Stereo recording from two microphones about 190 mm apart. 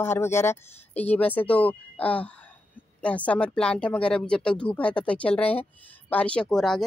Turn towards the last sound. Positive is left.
turn(degrees=0)  # may be behind; listen again after turning